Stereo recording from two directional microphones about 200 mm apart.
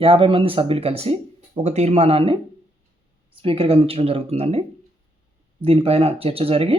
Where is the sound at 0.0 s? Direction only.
25° right (ahead or behind).